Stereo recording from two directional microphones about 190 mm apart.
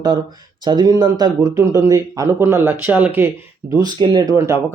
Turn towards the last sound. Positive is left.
turn(degrees=-20)  # may be behind; listen again after turning